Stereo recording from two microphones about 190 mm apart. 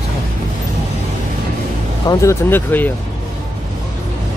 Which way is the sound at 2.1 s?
15° left (ahead or behind).